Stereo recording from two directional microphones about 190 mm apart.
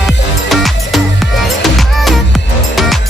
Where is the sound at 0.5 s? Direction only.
Centre (ahead or behind).